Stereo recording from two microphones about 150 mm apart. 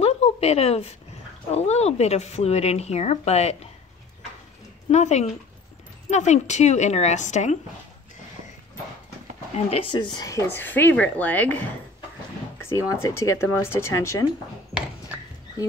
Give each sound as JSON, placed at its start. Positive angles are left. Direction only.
{"t": 0.0, "sound": "a sound", "side_deg": 45}
{"t": 1.5, "sound": "speech", "side_deg": 45}
{"t": 4.8, "sound": "speech", "side_deg": 50}
{"t": 9.7, "sound": "speech", "side_deg": 40}
{"t": 10.1, "sound": "speech", "side_deg": 20}